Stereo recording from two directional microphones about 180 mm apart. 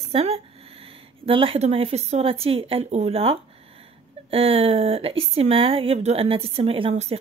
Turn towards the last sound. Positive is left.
turn(degrees=-35)  # may be behind; listen again after turning